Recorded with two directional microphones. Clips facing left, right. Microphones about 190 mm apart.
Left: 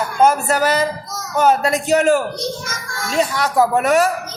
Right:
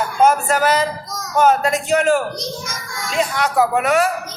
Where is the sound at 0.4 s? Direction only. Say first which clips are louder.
Even; 35° left (ahead or behind).